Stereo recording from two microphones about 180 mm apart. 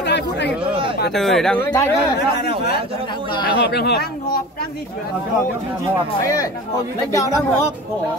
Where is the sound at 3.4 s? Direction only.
60° left (ahead or behind).